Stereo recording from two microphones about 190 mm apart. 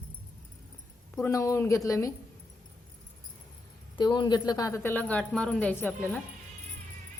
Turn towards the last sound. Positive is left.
turn(degrees=10)  # may be behind; listen again after turning